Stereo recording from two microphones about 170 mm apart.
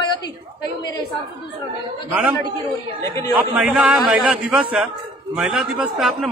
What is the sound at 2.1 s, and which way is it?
Speech, 5° right (ahead or behind).